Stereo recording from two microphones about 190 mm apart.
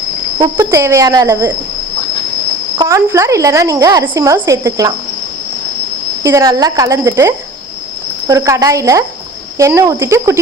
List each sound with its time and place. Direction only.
0.3 s speech: 20° right (ahead or behind)
2.7 s speech: 15° right (ahead or behind)
6.2 s speech: 15° right (ahead or behind)